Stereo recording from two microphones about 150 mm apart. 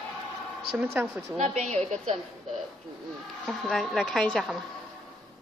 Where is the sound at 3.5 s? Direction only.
Centre (ahead or behind).